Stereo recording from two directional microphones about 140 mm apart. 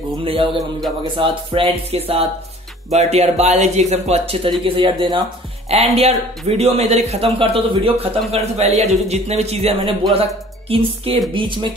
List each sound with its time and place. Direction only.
0.2 s speech: 40° right (ahead or behind)
0.6 s speech: centre (ahead or behind)
1.1 s speech: 40° right (ahead or behind)
4.5 s speech: 35° right (ahead or behind)
5.7 s speech: 45° right (ahead or behind)